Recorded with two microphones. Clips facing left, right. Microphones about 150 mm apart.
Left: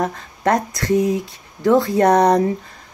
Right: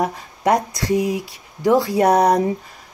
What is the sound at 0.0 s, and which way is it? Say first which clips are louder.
Speech: even; 15° right (ahead or behind).